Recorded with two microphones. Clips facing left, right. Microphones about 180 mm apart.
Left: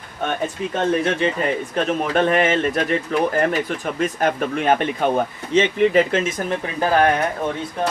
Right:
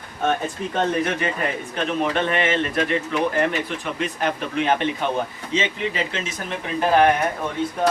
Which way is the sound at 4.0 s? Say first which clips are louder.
Left 5 dB; 45° left (ahead or behind).